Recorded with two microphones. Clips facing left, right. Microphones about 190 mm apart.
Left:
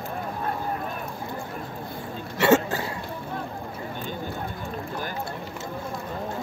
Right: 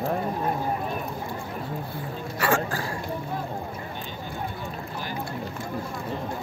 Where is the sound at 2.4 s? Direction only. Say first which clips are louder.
Left 6 dB; 25° left (ahead or behind).